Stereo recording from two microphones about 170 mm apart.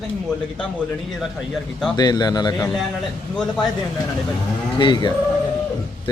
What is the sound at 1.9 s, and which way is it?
Speech, 25° left (ahead or behind).